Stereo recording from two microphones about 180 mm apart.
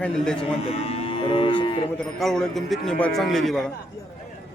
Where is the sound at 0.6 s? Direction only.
35° left (ahead or behind).